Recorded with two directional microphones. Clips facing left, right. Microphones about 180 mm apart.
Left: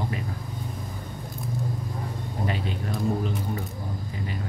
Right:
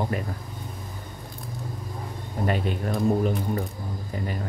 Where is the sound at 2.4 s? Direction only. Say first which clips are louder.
Right 5 dB; 55° right (ahead or behind).